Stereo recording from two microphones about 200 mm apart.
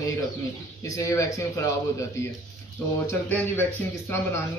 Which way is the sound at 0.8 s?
15° left (ahead or behind).